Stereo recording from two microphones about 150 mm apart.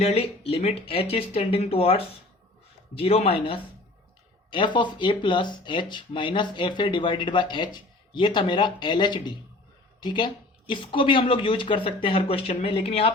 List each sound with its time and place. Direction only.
0.0 s speech: 40° left (ahead or behind)